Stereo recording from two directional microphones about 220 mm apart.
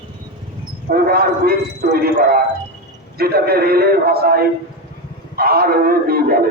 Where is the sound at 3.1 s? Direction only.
45° right (ahead or behind).